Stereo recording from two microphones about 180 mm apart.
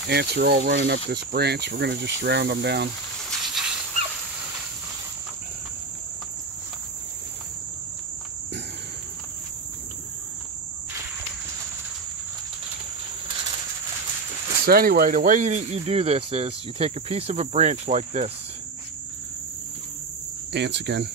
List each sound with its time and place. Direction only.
0.1 s speech: 65° right (ahead or behind)
3.3 s a sound: centre (ahead or behind)
14.7 s speech: 55° right (ahead or behind); by 18.3 s 40° right (ahead or behind)
20.5 s speech: 70° right (ahead or behind)